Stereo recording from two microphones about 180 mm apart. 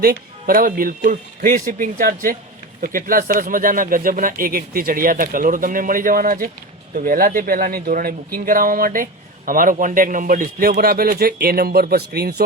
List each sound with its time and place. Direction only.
0.0 s a man's voice: 55° right (ahead or behind)